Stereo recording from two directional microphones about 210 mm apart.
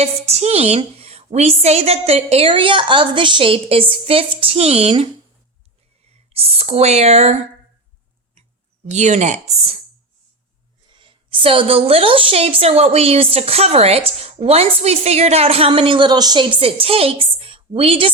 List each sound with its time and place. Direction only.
0.0 s a woman's voice: 30° right (ahead or behind)
6.3 s a woman's voice: 30° right (ahead or behind)
8.9 s speech: 35° right (ahead or behind)
10.9 s a woman's voice: 25° right (ahead or behind)